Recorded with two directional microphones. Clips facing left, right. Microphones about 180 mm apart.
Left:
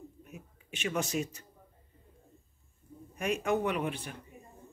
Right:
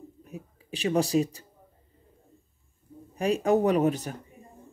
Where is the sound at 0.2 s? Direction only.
35° right (ahead or behind).